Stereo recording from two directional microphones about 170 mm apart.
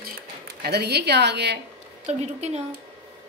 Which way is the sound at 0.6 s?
70° right (ahead or behind).